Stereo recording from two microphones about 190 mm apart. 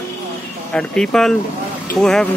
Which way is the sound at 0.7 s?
5° left (ahead or behind).